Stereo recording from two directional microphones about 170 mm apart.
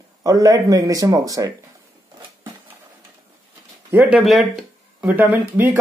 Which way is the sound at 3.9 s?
Centre (ahead or behind).